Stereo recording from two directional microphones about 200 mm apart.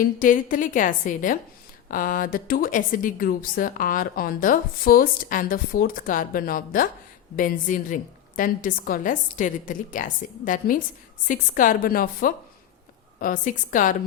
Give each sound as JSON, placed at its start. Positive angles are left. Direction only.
{"t": 0.0, "sound": "a woman's voice", "side_deg": 45}